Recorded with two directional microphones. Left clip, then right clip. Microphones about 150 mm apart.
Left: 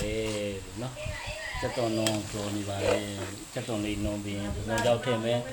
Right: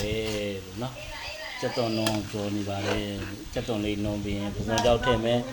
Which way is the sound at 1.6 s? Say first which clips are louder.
Right 4 dB; 20° right (ahead or behind).